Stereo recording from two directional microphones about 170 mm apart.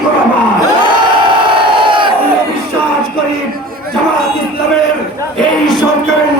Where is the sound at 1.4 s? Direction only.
30° right (ahead or behind).